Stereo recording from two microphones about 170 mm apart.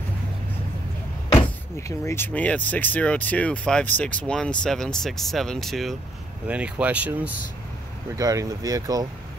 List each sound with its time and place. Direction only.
1.8 s speech: 15° left (ahead or behind); by 7.3 s 10° right (ahead or behind)
8.2 s speech: 20° right (ahead or behind)